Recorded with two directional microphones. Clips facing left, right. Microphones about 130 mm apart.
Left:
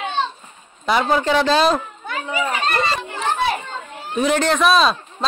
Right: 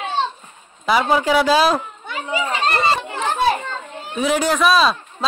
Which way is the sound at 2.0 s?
25° right (ahead or behind).